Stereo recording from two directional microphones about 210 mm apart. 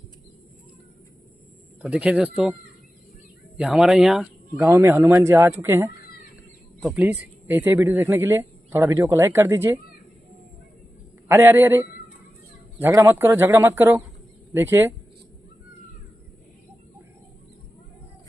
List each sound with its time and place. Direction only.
1.8 s speech: 5° right (ahead or behind)
3.5 s a man's voice: 5° right (ahead or behind)
11.2 s a man's voice: 10° right (ahead or behind)